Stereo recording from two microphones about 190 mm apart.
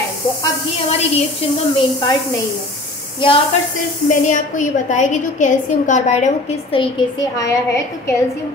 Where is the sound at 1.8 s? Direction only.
20° left (ahead or behind).